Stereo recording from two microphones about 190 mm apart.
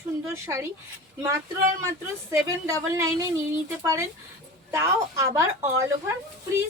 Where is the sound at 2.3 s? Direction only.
15° right (ahead or behind).